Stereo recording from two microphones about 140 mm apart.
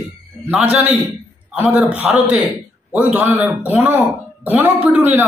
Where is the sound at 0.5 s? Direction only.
5° right (ahead or behind).